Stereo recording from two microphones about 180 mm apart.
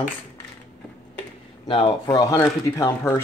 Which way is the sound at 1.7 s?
25° left (ahead or behind).